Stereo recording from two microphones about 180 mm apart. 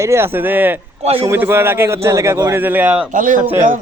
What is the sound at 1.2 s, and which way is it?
Speech, 10° right (ahead or behind).